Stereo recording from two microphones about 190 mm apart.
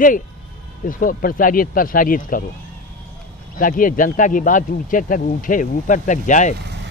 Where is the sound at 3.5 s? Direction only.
45° left (ahead or behind).